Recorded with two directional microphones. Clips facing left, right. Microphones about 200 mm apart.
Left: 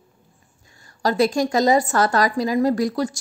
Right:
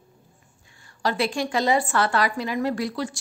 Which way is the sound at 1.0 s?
40° left (ahead or behind).